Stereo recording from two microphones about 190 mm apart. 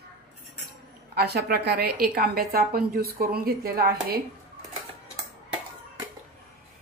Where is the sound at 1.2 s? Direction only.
55° right (ahead or behind).